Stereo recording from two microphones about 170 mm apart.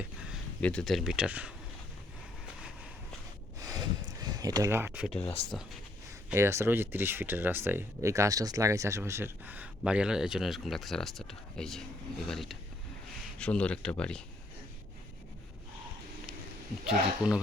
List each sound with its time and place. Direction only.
0.6 s speech: 5° left (ahead or behind)
3.6 s a sound: 25° right (ahead or behind)
5.0 s speech: 5° left (ahead or behind)
6.3 s speech: 15° right (ahead or behind); by 14.2 s 5° left (ahead or behind)
16.8 s speech: 5° right (ahead or behind)